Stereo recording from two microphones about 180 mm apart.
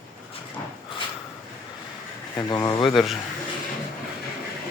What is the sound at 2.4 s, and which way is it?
Speech, 20° left (ahead or behind).